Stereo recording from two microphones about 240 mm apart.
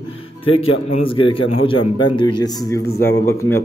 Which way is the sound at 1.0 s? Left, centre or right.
Left.